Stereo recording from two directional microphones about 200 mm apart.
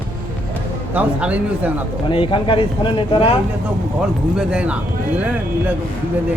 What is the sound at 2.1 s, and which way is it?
Speech, 25° left (ahead or behind).